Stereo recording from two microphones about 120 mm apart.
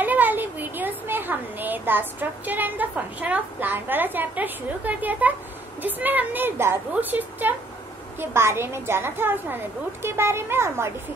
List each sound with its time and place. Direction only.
0.0 s a woman's voice: 15° right (ahead or behind)